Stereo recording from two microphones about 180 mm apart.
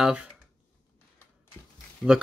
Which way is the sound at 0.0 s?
5° right (ahead or behind).